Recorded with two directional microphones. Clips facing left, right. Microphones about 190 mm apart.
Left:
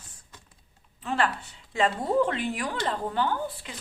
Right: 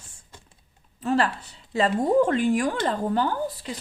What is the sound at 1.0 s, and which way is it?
Speech, 40° right (ahead or behind).